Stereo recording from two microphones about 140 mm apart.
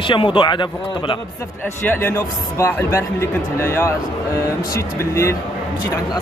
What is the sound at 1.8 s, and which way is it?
Speech, 15° left (ahead or behind).